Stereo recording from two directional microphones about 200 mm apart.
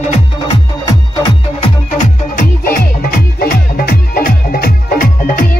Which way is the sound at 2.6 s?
45° left (ahead or behind).